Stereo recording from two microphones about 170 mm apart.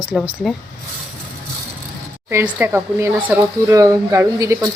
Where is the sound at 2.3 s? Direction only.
15° right (ahead or behind).